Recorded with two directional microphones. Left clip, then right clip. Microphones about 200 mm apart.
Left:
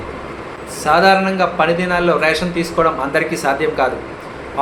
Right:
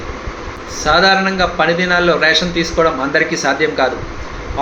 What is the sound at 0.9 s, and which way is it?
Speech, 10° right (ahead or behind).